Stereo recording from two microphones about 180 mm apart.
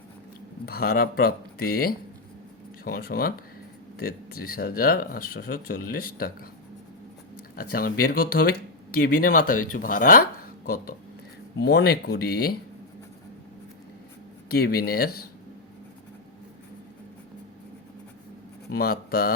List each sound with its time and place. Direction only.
0.6 s speech: 60° left (ahead or behind)
7.5 s speech: 55° left (ahead or behind)
11.6 s speech: 60° left (ahead or behind)
14.5 s speech: 60° left (ahead or behind)
18.7 s speech: 55° left (ahead or behind)